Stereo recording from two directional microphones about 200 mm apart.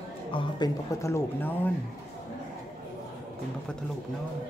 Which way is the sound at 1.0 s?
15° left (ahead or behind).